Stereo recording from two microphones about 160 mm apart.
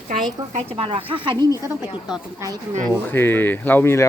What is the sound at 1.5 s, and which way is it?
Speech, 15° right (ahead or behind).